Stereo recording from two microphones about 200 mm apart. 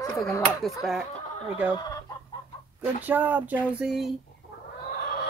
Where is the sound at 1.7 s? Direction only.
20° left (ahead or behind).